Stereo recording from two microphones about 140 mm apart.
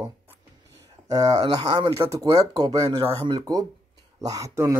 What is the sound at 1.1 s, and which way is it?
Speech, 25° right (ahead or behind).